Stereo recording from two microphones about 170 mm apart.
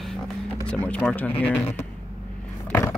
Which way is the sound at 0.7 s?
5° left (ahead or behind).